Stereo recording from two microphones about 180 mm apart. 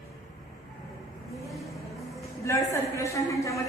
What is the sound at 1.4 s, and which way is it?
Vehicle, centre (ahead or behind).